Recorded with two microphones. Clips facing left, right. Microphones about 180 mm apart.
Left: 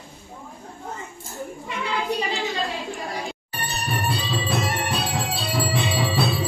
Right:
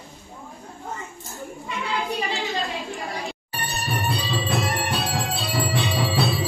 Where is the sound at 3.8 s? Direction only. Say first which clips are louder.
Even; centre (ahead or behind).